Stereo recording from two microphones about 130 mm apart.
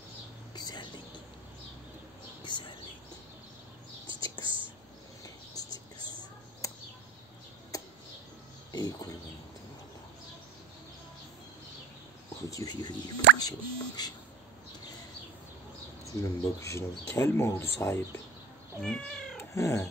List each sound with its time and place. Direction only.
0.6 s whispering: 35° left (ahead or behind)
2.4 s a sound: 35° left (ahead or behind)
4.1 s whispering: 40° right (ahead or behind)
7.7 s a sound: 25° left (ahead or behind)
8.7 s speech: 30° left (ahead or behind)
12.4 s speech: 30° left (ahead or behind)
16.1 s speech: 25° left (ahead or behind)
18.8 s cat: 5° left (ahead or behind)
19.3 s cat: 20° left (ahead or behind)